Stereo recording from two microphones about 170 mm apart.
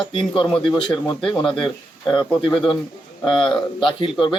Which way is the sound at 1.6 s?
30° left (ahead or behind).